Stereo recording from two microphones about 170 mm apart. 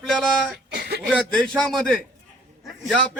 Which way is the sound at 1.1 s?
5° left (ahead or behind).